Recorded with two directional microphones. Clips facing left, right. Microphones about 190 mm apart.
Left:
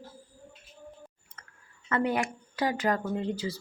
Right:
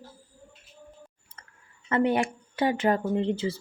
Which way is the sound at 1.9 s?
25° right (ahead or behind).